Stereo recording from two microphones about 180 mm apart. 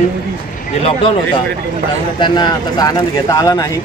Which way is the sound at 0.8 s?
30° left (ahead or behind).